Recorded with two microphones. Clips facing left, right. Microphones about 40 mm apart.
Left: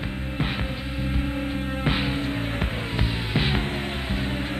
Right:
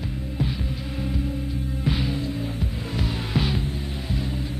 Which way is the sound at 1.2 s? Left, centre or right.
Left.